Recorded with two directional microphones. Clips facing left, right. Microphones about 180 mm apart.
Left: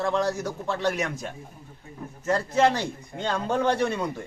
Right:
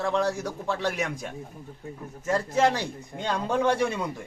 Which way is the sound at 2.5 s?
5° right (ahead or behind).